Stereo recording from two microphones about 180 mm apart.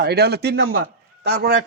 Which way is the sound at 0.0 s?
65° right (ahead or behind).